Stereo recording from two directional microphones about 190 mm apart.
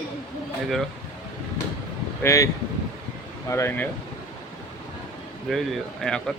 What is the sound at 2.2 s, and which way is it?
Speech, 15° left (ahead or behind).